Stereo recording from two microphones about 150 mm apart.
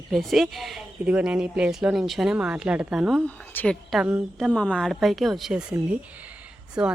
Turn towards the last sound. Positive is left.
turn(degrees=-5)  # may be behind; listen again after turning